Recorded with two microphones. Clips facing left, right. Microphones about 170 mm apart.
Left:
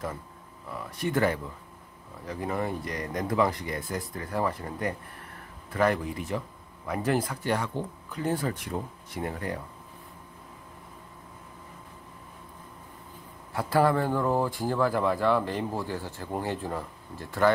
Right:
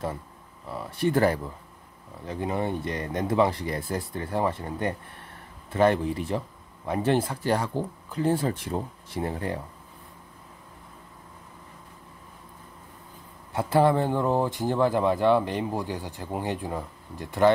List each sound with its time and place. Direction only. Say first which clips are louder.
0.7 s speech: right 4 dB; 30° right (ahead or behind)
13.5 s speech: right 2 dB; 20° right (ahead or behind)